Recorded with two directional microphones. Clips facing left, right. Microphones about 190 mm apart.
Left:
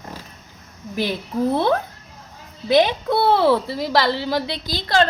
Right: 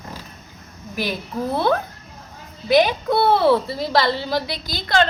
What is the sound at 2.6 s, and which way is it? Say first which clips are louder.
Speech: even; 25° left (ahead or behind).